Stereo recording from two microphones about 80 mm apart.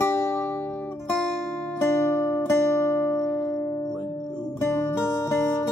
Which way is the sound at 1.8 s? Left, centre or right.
Left.